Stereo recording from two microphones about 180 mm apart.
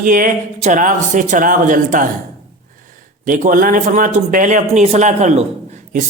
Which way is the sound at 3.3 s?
45° right (ahead or behind).